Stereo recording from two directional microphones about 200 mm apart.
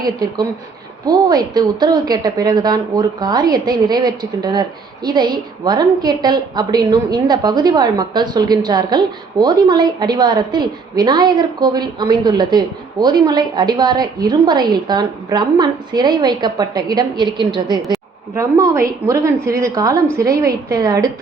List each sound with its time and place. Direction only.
0.0 s a woman's voice: 20° right (ahead or behind)